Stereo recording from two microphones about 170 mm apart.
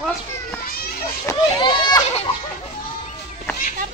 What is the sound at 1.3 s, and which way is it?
Speech, 25° left (ahead or behind).